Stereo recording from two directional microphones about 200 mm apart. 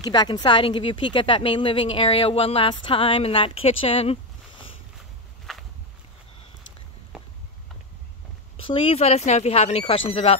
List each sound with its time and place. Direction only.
0.0 s speech: 20° left (ahead or behind)
5.5 s walk: centre (ahead or behind)
8.5 s speech: 25° left (ahead or behind)